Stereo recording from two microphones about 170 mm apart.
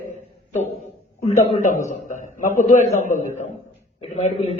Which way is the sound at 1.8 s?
45° left (ahead or behind).